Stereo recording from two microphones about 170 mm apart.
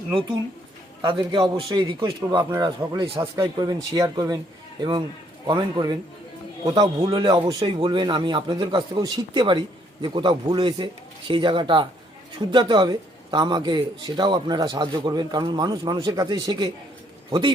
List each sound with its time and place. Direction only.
1.0 s a man's voice: 30° right (ahead or behind)
7.0 s a man's voice: 25° right (ahead or behind)